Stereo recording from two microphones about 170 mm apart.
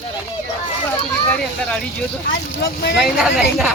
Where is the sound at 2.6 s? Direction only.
75° left (ahead or behind).